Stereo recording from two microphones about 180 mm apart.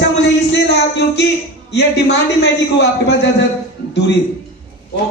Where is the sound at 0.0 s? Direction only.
70° left (ahead or behind).